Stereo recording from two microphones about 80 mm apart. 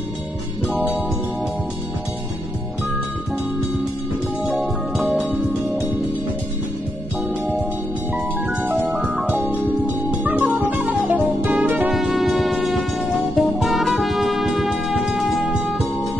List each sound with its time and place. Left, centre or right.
4.6 s music: centre
9.3 s music: centre
11.9 s music: centre